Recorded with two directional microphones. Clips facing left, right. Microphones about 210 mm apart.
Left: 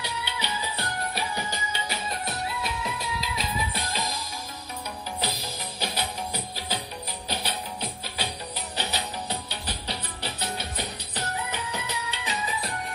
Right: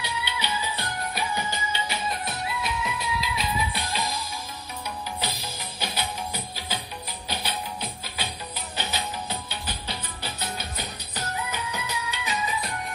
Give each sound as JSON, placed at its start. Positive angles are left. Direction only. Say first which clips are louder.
{"t": 0.0, "sound": "music", "louder": "right 1 dB", "side_deg": 35}
{"t": 5.8, "sound": "music", "louder": "even", "side_deg": 35}